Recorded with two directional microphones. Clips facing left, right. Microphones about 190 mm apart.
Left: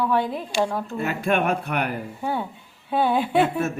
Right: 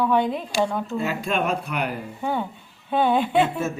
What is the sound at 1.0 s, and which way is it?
Speech, 60° left (ahead or behind).